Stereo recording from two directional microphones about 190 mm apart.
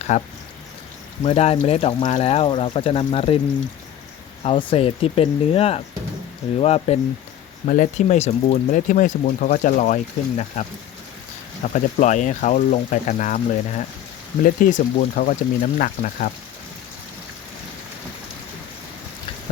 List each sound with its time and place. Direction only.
0.1 s speech: 40° left (ahead or behind)
4.4 s speech: 30° left (ahead or behind); by 16.3 s 45° left (ahead or behind)